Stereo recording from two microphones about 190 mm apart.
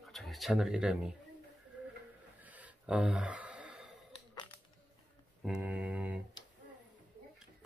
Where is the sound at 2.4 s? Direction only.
10° right (ahead or behind).